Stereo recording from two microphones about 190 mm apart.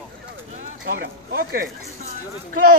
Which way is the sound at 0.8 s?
55° right (ahead or behind).